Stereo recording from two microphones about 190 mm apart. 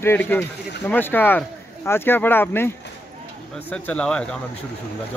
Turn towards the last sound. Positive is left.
turn(degrees=5)  # may be behind; listen again after turning